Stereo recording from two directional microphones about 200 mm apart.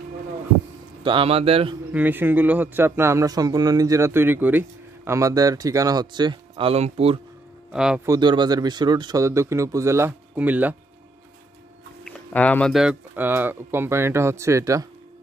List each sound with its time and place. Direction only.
1.0 s speech: 25° right (ahead or behind)
1.9 s a man's voice: 10° right (ahead or behind); by 7.2 s 30° right (ahead or behind)
7.7 s speech: 5° right (ahead or behind)
8.1 s a man's voice: 20° right (ahead or behind)
12.0 s a man's voice: 5° left (ahead or behind); by 14.9 s 15° right (ahead or behind)